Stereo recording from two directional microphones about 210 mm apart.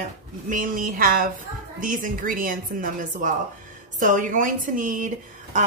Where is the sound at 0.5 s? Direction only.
40° right (ahead or behind).